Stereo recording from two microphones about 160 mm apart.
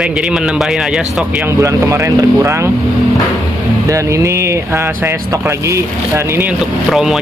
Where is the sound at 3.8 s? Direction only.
20° right (ahead or behind).